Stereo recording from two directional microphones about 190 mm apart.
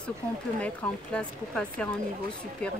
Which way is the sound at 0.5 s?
5° left (ahead or behind).